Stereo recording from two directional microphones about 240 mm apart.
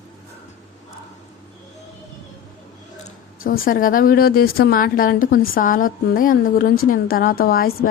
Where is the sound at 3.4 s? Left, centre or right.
Left.